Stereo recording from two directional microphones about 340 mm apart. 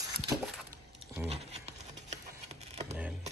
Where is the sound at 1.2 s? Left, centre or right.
Centre.